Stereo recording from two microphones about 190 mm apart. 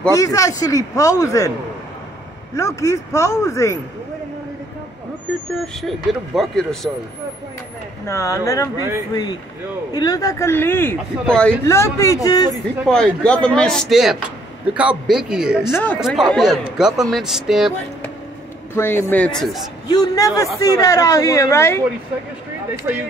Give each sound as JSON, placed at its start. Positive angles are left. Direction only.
{"t": 0.1, "sound": "speech", "side_deg": 15}
{"t": 2.5, "sound": "speech", "side_deg": 15}
{"t": 5.3, "sound": "a man's voice", "side_deg": 5}
{"t": 8.1, "sound": "speech", "side_deg": 15}
{"t": 11.6, "sound": "speech", "side_deg": 15}
{"t": 12.8, "sound": "a man's voice", "side_deg": 5}
{"t": 15.7, "sound": "a man's voice", "side_deg": 5}
{"t": 18.8, "sound": "speech", "side_deg": 10}
{"t": 19.9, "sound": "speech", "side_deg": 20}
{"t": 22.9, "sound": "speech", "side_deg": -15}